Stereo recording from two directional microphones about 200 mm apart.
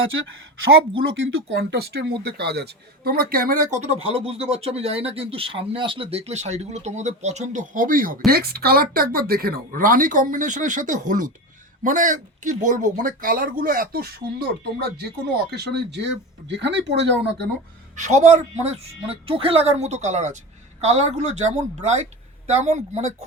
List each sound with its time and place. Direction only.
1.5 s a man's voice: 55° right (ahead or behind)
17.9 s a man's voice: 35° right (ahead or behind)